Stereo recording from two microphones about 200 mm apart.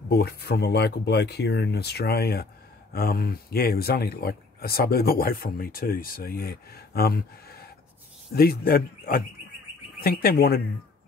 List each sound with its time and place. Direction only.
0.1 s speech: 55° left (ahead or behind)